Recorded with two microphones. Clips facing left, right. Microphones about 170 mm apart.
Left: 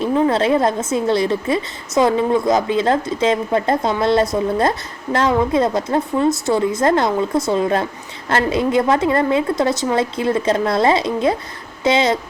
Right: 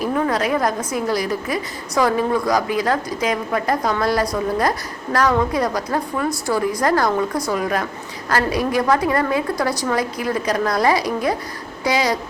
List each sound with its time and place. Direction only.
0.0 s a woman's voice: 25° left (ahead or behind)